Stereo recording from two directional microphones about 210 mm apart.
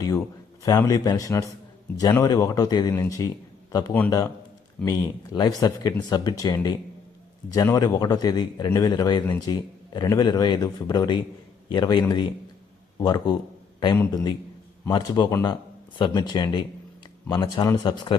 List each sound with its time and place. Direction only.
0.6 s a man's voice: 15° left (ahead or behind)